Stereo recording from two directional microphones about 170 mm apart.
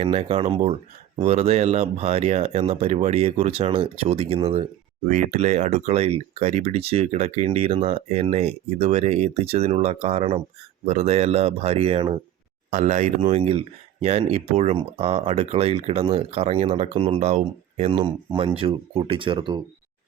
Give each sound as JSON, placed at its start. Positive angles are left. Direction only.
{"t": 0.0, "sound": "speech", "side_deg": -35}
{"t": 5.0, "sound": "speech", "side_deg": -50}